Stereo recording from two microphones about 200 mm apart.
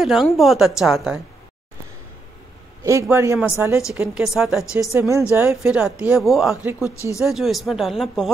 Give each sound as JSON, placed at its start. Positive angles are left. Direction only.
{"t": 0.0, "sound": "a woman's voice", "side_deg": 0}
{"t": 2.8, "sound": "a man's voice", "side_deg": -15}
{"t": 4.9, "sound": "a man's voice", "side_deg": -15}
{"t": 5.9, "sound": "a woman's voice", "side_deg": -5}
{"t": 6.8, "sound": "speech", "side_deg": 15}
{"t": 7.2, "sound": "a woman's voice", "side_deg": 0}